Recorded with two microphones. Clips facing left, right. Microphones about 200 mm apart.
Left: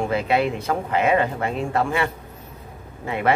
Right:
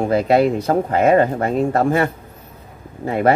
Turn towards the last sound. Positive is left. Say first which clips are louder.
# right 5 dB
turn(degrees=-40)  # may be behind; listen again after turning